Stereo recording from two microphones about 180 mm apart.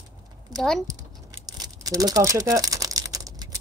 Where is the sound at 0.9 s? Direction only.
20° right (ahead or behind).